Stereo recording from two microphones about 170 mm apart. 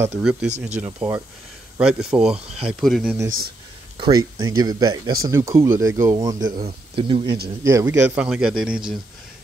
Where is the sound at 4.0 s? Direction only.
25° right (ahead or behind).